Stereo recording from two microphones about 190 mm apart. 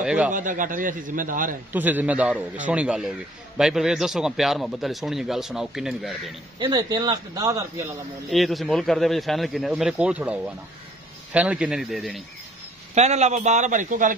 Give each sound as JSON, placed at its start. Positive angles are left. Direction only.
{"t": 0.0, "sound": "speech", "side_deg": -5}
{"t": 0.3, "sound": "a man's voice", "side_deg": -45}
{"t": 1.7, "sound": "a man's voice", "side_deg": -10}
{"t": 6.6, "sound": "speech", "side_deg": -20}
{"t": 8.3, "sound": "a man's voice", "side_deg": 0}
{"t": 12.9, "sound": "a man's voice", "side_deg": -35}